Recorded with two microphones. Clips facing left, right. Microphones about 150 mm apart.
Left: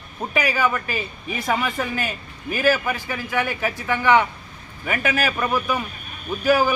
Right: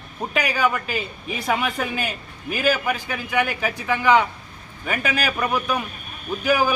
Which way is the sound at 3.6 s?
Centre (ahead or behind).